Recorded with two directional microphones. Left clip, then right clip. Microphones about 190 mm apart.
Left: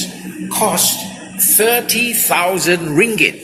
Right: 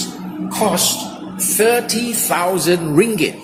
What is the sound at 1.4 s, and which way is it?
Music, 10° right (ahead or behind).